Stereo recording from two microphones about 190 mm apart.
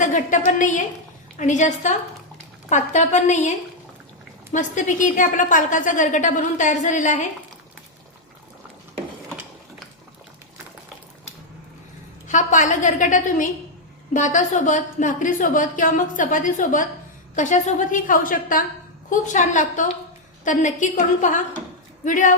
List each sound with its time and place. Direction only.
0.0 s a woman's voice: 40° left (ahead or behind)
4.5 s a woman's voice: 40° left (ahead or behind)
12.3 s a woman's voice: 40° left (ahead or behind)